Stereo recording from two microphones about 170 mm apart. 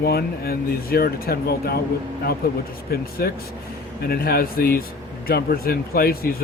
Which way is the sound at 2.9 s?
60° left (ahead or behind).